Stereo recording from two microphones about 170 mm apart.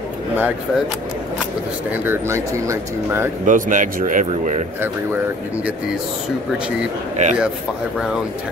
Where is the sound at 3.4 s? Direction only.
50° right (ahead or behind).